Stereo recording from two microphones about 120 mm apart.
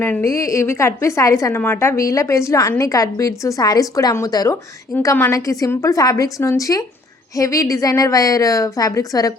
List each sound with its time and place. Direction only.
0.0 s a woman's voice: 20° left (ahead or behind)
5.1 s a woman's voice: 20° left (ahead or behind)